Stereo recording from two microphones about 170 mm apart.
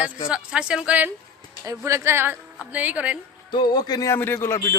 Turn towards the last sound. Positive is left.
turn(degrees=15)  # may be behind; listen again after turning